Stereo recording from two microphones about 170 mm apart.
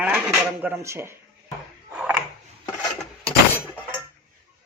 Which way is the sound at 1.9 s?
5° right (ahead or behind).